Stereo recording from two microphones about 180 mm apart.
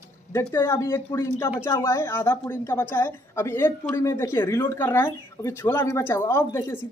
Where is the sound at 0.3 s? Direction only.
15° left (ahead or behind).